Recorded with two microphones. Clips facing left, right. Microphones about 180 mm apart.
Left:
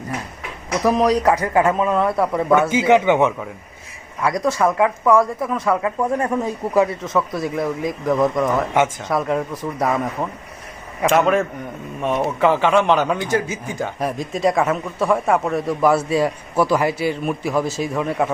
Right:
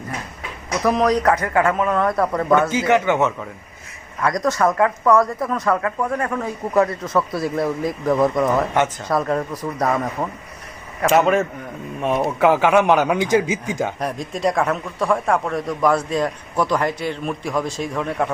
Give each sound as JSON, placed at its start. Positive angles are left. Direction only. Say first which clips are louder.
{"t": 0.8, "sound": "a man's voice", "louder": "left 1 dB", "side_deg": 10}
{"t": 5.8, "sound": "a man's voice", "louder": "left 2 dB", "side_deg": 20}
{"t": 6.7, "sound": "a man's voice", "louder": "even", "side_deg": 0}
{"t": 14.0, "sound": "speech", "louder": "left 2 dB", "side_deg": 0}